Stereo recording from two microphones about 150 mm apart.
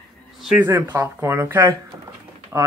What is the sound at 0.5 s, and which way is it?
Speech, 15° right (ahead or behind).